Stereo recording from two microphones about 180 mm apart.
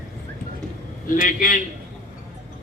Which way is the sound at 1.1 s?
50° left (ahead or behind).